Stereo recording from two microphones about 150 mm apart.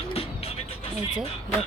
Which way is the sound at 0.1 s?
40° left (ahead or behind).